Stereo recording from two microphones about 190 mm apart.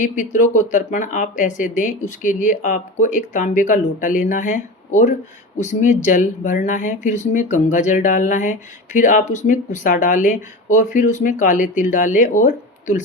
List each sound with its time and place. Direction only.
0.0 s speech: 40° left (ahead or behind)